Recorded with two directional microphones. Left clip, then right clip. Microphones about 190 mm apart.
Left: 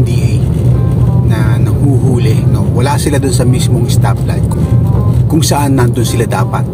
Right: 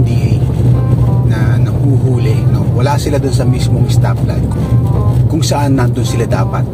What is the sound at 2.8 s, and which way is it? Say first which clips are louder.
Speech: left 1 dB; 25° left (ahead or behind).